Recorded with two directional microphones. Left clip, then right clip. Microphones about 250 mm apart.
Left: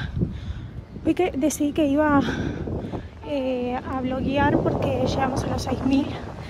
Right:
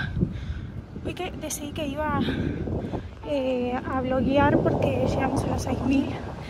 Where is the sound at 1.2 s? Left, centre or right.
Left.